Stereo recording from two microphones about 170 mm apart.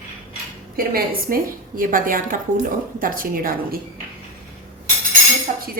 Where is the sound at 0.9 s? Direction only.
55° right (ahead or behind).